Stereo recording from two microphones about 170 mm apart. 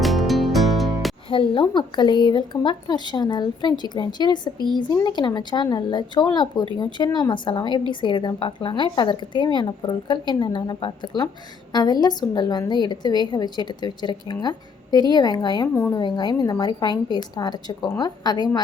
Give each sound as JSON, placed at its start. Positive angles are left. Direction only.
{"t": 0.0, "sound": "music", "side_deg": 0}
{"t": 1.3, "sound": "a woman's voice", "side_deg": 30}